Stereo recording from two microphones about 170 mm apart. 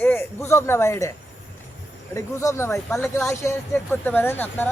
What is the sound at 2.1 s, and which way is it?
Speech, 15° left (ahead or behind).